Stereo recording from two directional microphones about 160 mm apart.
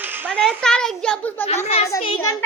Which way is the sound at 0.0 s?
10° right (ahead or behind).